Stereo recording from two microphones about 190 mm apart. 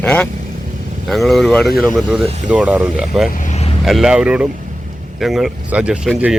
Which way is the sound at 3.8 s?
Centre (ahead or behind).